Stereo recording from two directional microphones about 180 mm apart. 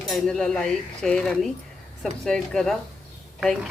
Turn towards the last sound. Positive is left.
turn(degrees=0)  # may be behind; listen again after turning